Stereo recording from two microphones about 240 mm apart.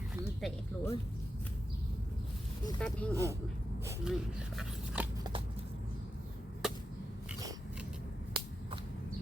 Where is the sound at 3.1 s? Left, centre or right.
Centre.